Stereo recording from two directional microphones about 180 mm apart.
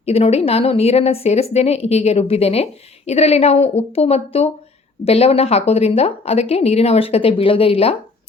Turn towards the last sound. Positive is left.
turn(degrees=30)  # may be behind; listen again after turning